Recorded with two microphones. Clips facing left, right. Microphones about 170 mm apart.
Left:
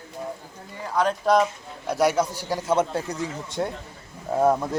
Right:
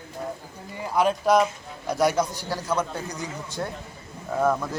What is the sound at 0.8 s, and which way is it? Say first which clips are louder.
A man's voice: right 1 dB; 10° right (ahead or behind).